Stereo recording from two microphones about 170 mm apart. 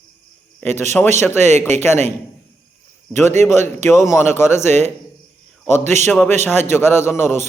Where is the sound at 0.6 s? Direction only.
15° left (ahead or behind).